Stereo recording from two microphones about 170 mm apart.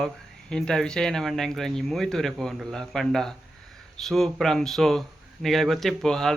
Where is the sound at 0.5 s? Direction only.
5° left (ahead or behind).